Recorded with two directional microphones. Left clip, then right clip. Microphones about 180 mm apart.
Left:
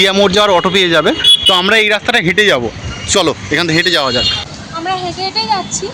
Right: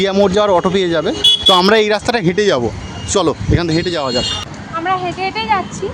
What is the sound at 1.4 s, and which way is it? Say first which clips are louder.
Speech: left 1 dB; 30° right (ahead or behind).